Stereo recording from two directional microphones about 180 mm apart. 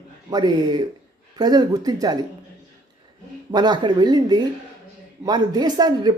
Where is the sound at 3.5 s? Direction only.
25° right (ahead or behind).